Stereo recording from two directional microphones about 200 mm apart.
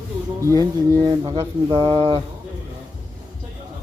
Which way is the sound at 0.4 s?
20° right (ahead or behind).